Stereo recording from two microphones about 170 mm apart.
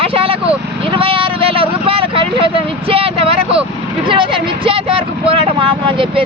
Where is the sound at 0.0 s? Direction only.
35° right (ahead or behind).